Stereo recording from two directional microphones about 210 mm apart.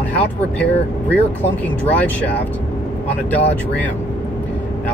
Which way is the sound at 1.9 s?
5° left (ahead or behind).